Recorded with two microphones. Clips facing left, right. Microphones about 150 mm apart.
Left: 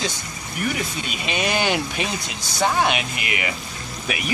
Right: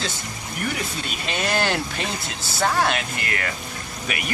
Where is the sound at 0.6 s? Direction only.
5° left (ahead or behind).